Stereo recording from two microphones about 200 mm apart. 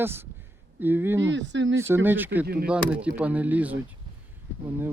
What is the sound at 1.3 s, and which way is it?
Speech, 65° right (ahead or behind).